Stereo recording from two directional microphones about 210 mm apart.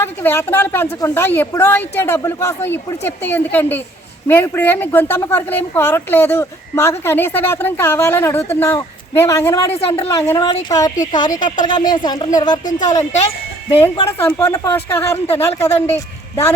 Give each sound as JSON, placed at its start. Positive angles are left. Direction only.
{"t": 0.0, "sound": "a woman's voice", "side_deg": 10}
{"t": 13.0, "sound": "speech", "side_deg": 30}
{"t": 14.2, "sound": "a woman's voice", "side_deg": 10}